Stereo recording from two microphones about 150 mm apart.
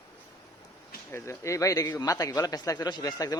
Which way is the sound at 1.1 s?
20° left (ahead or behind).